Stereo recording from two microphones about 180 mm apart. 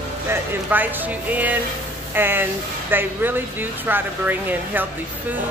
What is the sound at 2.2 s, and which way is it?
Speech, 10° right (ahead or behind).